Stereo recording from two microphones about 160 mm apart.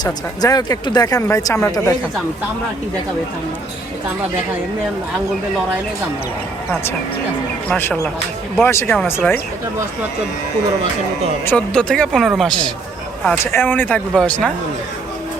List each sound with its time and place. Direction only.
0.0 s speech: 25° left (ahead or behind)
7.7 s speech: 15° left (ahead or behind)
11.4 s speech: 5° left (ahead or behind)